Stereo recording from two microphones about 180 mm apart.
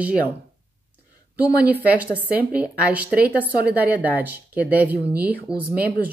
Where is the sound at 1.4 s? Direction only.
10° right (ahead or behind).